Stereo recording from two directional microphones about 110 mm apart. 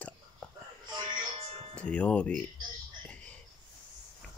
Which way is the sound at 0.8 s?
45° right (ahead or behind).